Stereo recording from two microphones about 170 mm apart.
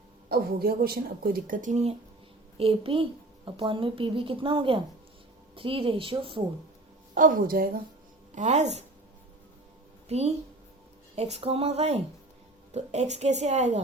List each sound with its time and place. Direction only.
0.3 s speech: 60° right (ahead or behind); by 6.4 s 30° right (ahead or behind)
7.1 s speech: 50° right (ahead or behind)
8.4 s speech: 40° right (ahead or behind)
10.1 s a woman's voice: 40° right (ahead or behind)